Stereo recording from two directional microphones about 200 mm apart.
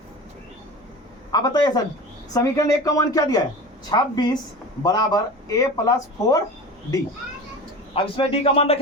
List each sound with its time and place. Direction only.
1.3 s a man's voice: 20° left (ahead or behind)
7.9 s a man's voice: 25° left (ahead or behind)